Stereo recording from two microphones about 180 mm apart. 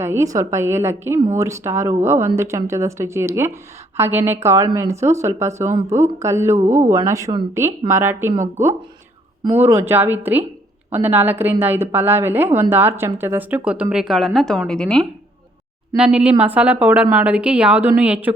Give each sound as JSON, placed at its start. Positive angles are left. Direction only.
{"t": 0.0, "sound": "a woman's voice", "side_deg": -15}